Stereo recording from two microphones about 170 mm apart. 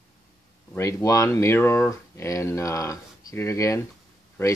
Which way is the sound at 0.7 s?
20° left (ahead or behind).